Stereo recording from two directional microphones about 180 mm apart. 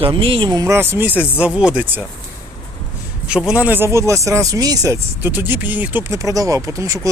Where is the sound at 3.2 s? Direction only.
5° right (ahead or behind).